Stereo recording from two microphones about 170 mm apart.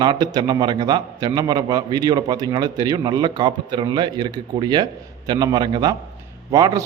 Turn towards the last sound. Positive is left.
turn(degrees=-20)  # may be behind; listen again after turning